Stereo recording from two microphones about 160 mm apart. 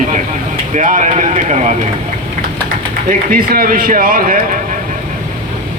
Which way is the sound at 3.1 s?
60° right (ahead or behind).